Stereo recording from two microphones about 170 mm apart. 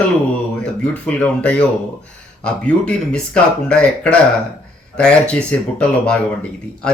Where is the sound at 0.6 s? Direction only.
5° left (ahead or behind).